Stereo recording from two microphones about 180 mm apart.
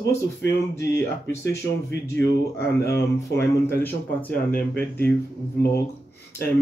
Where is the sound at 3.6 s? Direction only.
10° left (ahead or behind).